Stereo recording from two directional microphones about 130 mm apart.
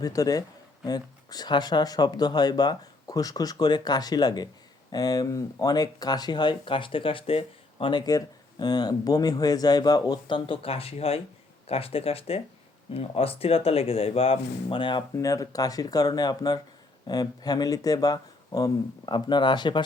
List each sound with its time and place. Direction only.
0.0 s speech: 30° left (ahead or behind)
15.1 s speech: 25° left (ahead or behind)